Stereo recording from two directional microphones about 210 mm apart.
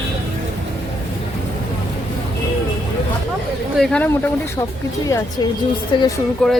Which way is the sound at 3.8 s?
5° left (ahead or behind).